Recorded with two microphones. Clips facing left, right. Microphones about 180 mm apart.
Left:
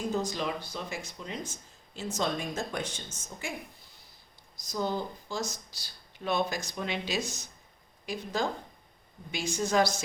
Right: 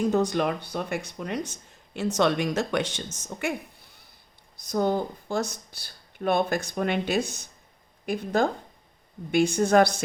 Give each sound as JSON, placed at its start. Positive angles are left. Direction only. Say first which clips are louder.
{"t": 0.1, "sound": "speech", "louder": "right 7 dB", "side_deg": -65}
{"t": 3.2, "sound": "a woman's voice", "louder": "right 11 dB", "side_deg": -70}
{"t": 4.5, "sound": "speech", "louder": "right 7 dB", "side_deg": -60}